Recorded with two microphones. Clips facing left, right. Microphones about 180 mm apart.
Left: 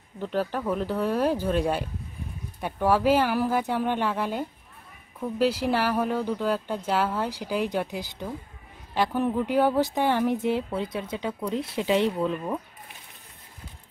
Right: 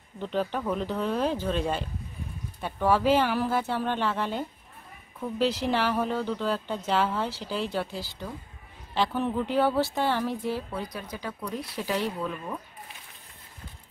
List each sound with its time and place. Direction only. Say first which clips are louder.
0.2 s speech: left 1 dB; 5° left (ahead or behind); by 12.5 s 25° left (ahead or behind)